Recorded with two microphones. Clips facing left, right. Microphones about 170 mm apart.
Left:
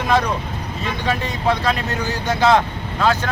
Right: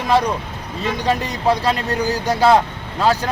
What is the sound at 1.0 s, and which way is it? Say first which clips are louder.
Speech: right 2 dB; 40° right (ahead or behind).